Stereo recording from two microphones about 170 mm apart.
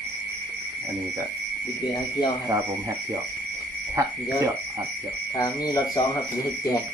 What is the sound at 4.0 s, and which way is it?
Frog, 20° right (ahead or behind).